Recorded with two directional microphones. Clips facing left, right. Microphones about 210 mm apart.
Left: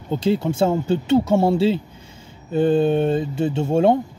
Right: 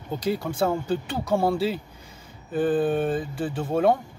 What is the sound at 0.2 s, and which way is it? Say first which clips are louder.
Speech: left 6 dB; 25° left (ahead or behind).